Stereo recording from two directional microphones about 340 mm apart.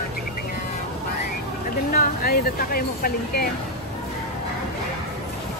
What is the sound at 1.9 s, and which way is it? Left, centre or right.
Speech, left.